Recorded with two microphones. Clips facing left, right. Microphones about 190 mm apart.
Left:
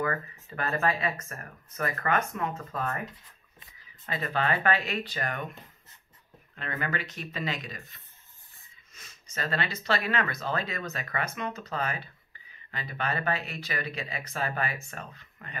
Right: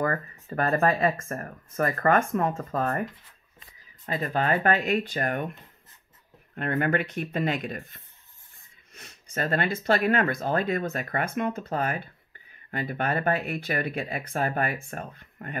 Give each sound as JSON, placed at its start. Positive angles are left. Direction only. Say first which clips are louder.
{"t": 0.0, "sound": "speech", "louder": "right 3 dB", "side_deg": -40}
{"t": 4.0, "sound": "speech", "louder": "right 3 dB", "side_deg": -40}